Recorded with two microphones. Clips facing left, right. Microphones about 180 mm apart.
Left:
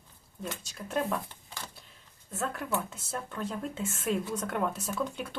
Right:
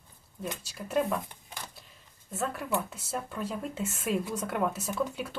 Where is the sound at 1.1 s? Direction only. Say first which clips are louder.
Right 1 dB; 15° right (ahead or behind).